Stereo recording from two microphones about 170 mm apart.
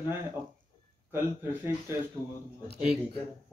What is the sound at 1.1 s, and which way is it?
Speech, 15° right (ahead or behind).